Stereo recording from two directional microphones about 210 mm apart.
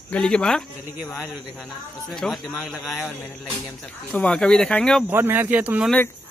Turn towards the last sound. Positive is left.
turn(degrees=-5)  # may be behind; listen again after turning